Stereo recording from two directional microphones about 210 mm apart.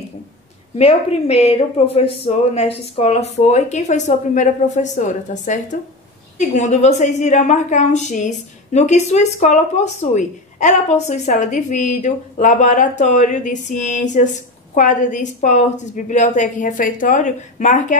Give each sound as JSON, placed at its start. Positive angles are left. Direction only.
{"t": 0.7, "sound": "a woman's voice", "side_deg": 30}